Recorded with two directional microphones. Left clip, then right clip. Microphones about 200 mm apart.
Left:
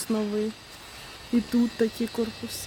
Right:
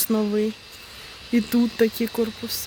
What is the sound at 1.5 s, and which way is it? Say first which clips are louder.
Speech: right 5 dB; 20° right (ahead or behind).